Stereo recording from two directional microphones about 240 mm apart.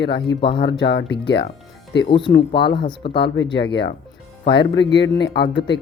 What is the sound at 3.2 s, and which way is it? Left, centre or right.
Speech, left.